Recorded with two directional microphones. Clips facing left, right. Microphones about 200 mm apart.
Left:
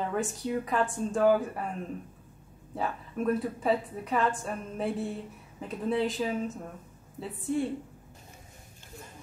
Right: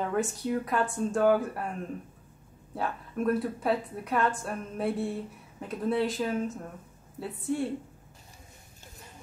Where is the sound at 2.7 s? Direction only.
Centre (ahead or behind).